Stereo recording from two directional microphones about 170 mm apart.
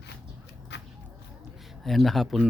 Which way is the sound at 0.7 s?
90° left.